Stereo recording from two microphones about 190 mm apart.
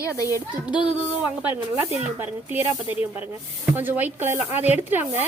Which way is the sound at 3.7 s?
10° right (ahead or behind).